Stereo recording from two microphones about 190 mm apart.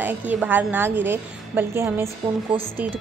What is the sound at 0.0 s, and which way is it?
A woman's voice, 10° right (ahead or behind).